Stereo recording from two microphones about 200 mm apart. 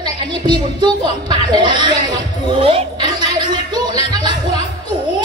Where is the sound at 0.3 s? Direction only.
20° right (ahead or behind).